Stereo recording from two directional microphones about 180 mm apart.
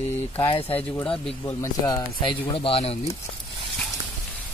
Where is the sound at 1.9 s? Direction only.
25° left (ahead or behind).